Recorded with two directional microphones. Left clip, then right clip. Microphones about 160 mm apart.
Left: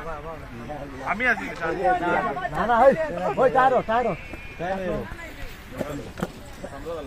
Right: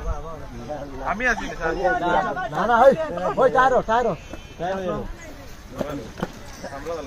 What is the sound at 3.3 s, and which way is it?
Speech, 30° right (ahead or behind).